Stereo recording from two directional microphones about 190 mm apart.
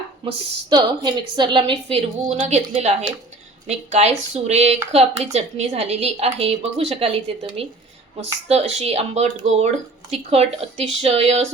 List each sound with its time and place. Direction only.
0.3 s a woman's voice: 25° right (ahead or behind)
2.2 s a woman's voice: 40° right (ahead or behind)